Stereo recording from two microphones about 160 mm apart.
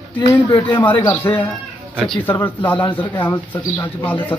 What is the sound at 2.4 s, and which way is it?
Speech, 10° left (ahead or behind).